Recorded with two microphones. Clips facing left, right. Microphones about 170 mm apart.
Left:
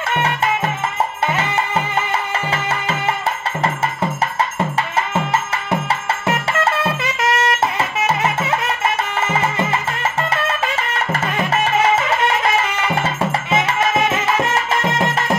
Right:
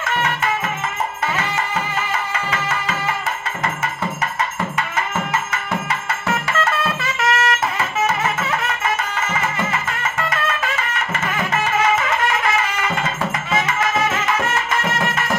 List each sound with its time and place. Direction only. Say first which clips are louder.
0.0 s music: left 2 dB; 30° left (ahead or behind)
2.3 s music: left 2 dB; 30° left (ahead or behind)
4.7 s music: left 3 dB; 30° left (ahead or behind)
13.0 s music: left 3 dB; 25° left (ahead or behind)